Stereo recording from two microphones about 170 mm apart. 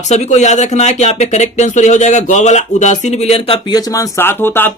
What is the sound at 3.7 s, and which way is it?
Speech, 20° left (ahead or behind).